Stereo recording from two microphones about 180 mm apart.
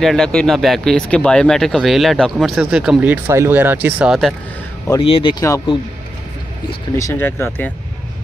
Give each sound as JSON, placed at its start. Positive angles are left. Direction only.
{"t": 0.0, "sound": "speech", "side_deg": 0}
{"t": 5.0, "sound": "speech", "side_deg": 30}
{"t": 7.0, "sound": "speech", "side_deg": 15}